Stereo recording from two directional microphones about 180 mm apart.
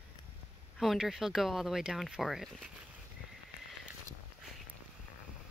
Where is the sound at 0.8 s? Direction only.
Centre (ahead or behind).